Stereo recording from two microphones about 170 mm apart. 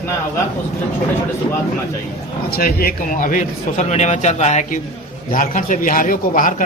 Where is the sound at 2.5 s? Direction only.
60° left (ahead or behind).